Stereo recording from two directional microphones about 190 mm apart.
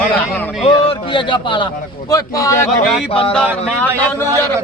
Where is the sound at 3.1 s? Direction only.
30° left (ahead or behind).